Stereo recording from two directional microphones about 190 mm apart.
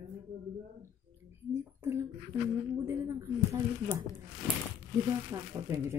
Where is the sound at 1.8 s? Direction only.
15° right (ahead or behind).